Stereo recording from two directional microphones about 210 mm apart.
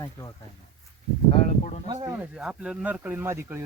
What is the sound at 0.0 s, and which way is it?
Speech, 15° left (ahead or behind).